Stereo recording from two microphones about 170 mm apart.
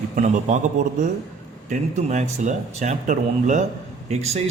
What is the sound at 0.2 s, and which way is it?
A man's voice, 45° right (ahead or behind).